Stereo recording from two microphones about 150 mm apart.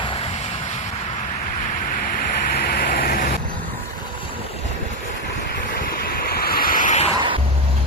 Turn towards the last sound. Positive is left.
turn(degrees=-35)  # may be behind; listen again after turning